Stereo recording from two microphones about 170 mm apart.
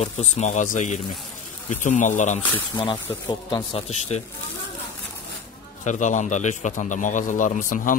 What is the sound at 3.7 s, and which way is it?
Speech, 35° left (ahead or behind).